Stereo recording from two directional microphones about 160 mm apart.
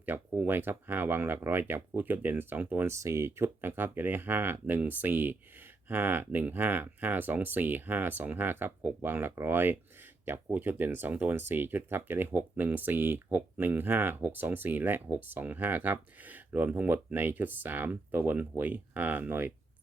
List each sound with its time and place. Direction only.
0.0 s speech: 10° right (ahead or behind)